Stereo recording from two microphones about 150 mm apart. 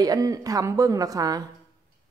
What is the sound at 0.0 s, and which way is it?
A woman's voice, 25° right (ahead or behind).